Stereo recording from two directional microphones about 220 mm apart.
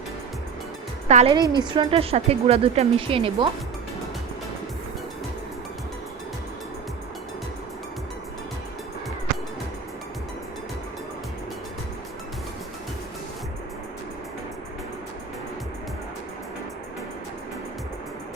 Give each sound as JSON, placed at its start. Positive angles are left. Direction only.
{"t": 1.0, "sound": "a woman's voice", "side_deg": -30}